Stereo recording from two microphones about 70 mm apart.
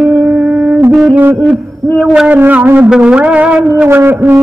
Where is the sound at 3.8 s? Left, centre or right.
Right.